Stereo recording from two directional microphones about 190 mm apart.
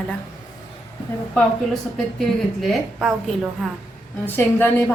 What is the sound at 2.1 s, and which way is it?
A woman's voice, centre (ahead or behind).